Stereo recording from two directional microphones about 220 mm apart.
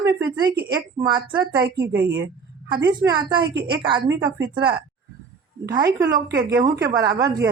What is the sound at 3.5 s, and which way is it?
Speech, 45° right (ahead or behind).